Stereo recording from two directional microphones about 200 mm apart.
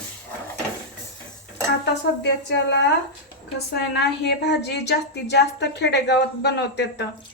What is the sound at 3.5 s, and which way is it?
A woman's voice, 55° left (ahead or behind).